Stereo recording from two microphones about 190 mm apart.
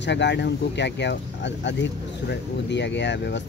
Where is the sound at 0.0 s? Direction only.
65° left (ahead or behind).